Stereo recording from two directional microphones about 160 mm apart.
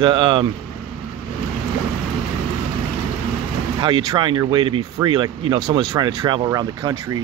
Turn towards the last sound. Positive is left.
turn(degrees=-25)  # may be behind; listen again after turning